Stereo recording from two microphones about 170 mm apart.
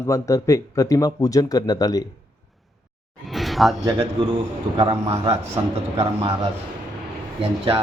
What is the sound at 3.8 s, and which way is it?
Speech, 25° right (ahead or behind).